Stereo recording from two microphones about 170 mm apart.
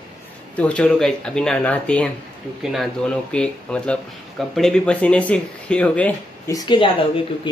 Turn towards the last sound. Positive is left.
turn(degrees=30)  # may be behind; listen again after turning